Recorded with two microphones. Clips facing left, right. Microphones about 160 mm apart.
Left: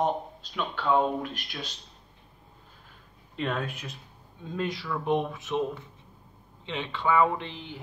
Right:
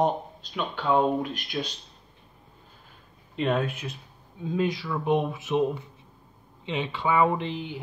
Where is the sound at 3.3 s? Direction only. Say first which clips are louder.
Right 5 dB; 15° right (ahead or behind).